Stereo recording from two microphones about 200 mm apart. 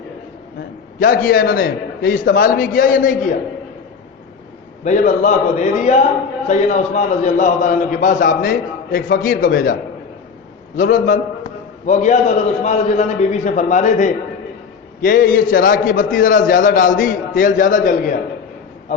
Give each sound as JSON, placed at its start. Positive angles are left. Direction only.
{"t": 0.9, "sound": "a man's voice", "side_deg": 45}
{"t": 4.8, "sound": "a man's voice", "side_deg": 35}
{"t": 10.8, "sound": "a man's voice", "side_deg": 40}